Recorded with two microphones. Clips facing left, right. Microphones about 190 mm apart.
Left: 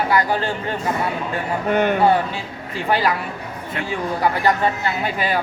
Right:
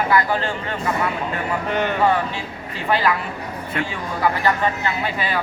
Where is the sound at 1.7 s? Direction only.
50° left (ahead or behind).